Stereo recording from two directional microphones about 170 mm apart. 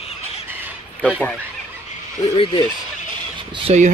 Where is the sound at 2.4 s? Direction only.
30° left (ahead or behind).